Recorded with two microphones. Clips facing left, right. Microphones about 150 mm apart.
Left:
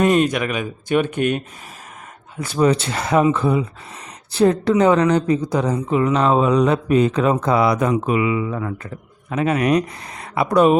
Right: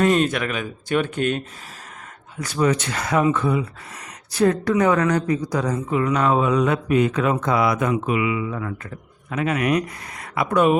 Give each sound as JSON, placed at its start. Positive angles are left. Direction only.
{"t": 0.0, "sound": "speech", "side_deg": 10}
{"t": 2.4, "sound": "speech", "side_deg": 30}